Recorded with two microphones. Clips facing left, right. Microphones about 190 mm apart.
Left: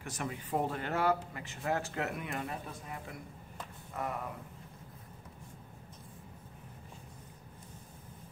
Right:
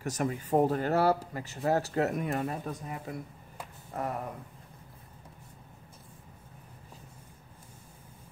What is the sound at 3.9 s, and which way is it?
Speech, 40° right (ahead or behind).